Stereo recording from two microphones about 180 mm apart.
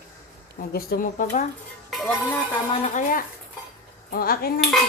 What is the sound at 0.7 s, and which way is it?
Speech, 55° left (ahead or behind).